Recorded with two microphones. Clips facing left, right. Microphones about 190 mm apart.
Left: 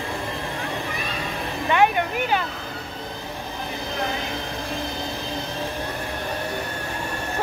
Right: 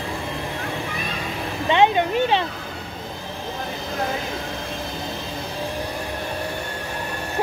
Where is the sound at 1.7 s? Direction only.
25° right (ahead or behind).